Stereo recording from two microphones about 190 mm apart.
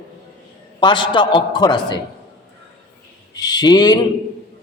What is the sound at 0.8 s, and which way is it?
A man's voice, 25° left (ahead or behind).